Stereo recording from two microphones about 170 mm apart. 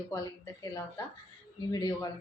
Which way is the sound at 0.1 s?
20° left (ahead or behind).